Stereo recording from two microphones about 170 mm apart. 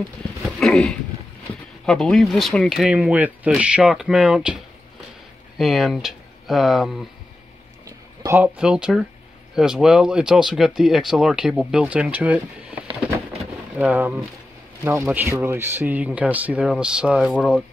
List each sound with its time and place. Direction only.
0.6 s speech: 5° left (ahead or behind)
5.6 s speech: centre (ahead or behind)
7.8 s a sound: 15° right (ahead or behind)
8.5 s speech: 5° right (ahead or behind)
13.7 s speech: 10° right (ahead or behind)